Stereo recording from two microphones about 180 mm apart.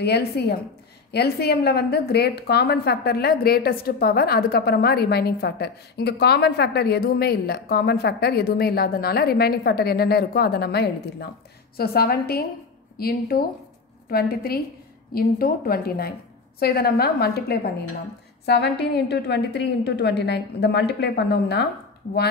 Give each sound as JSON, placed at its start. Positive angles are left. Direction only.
{"t": 0.0, "sound": "a woman's voice", "side_deg": 65}